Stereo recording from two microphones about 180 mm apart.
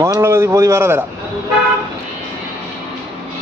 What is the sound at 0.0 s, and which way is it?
A man's voice, 15° right (ahead or behind).